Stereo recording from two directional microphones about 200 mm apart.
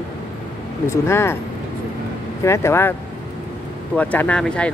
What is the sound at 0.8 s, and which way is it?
Speech, 15° left (ahead or behind).